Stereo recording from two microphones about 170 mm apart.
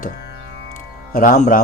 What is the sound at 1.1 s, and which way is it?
Speech, 50° left (ahead or behind).